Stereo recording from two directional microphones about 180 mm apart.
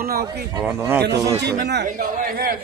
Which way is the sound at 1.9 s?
50° right (ahead or behind).